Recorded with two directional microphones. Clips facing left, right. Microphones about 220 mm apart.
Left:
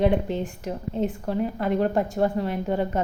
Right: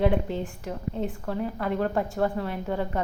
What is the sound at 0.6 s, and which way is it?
A woman's voice, 20° left (ahead or behind).